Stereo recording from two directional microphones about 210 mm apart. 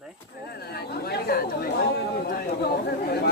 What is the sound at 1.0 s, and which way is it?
Chatter, 45° left (ahead or behind).